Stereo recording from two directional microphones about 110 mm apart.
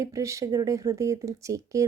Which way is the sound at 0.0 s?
30° right (ahead or behind).